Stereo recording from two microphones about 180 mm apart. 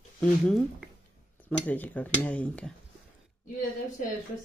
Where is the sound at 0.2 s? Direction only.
5° left (ahead or behind).